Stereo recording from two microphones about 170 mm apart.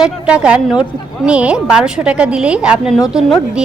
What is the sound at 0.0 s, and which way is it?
A woman's voice, 5° right (ahead or behind).